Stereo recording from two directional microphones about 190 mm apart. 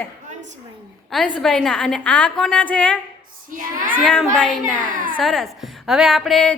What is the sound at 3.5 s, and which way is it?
Child singing, 45° right (ahead or behind).